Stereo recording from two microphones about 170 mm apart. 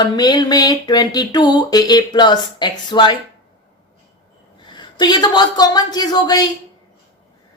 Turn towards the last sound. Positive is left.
turn(degrees=25)  # may be behind; listen again after turning